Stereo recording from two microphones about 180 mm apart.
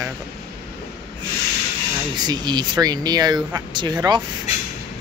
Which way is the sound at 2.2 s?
25° right (ahead or behind).